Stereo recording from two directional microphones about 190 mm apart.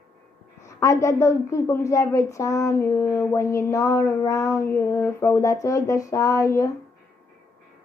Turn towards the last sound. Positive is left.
turn(degrees=15)  # may be behind; listen again after turning